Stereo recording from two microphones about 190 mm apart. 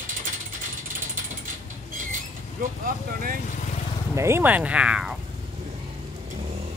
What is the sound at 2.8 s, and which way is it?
Speech, 50° right (ahead or behind).